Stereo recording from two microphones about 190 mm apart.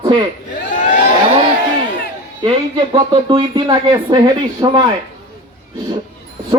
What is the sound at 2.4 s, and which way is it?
Speech, 25° right (ahead or behind).